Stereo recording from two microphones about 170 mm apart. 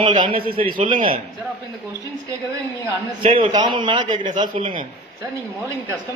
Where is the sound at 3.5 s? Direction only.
25° right (ahead or behind).